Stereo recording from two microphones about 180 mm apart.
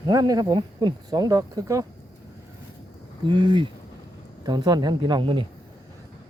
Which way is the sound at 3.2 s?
25° right (ahead or behind).